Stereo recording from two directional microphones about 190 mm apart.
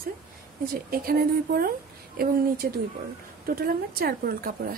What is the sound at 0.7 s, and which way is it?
Speech, 50° right (ahead or behind).